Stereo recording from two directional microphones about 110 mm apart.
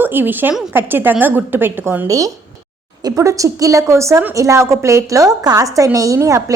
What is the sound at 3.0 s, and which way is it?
A woman's voice, 30° right (ahead or behind).